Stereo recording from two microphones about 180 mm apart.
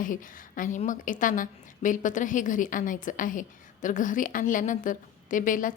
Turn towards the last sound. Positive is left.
turn(degrees=45)  # may be behind; listen again after turning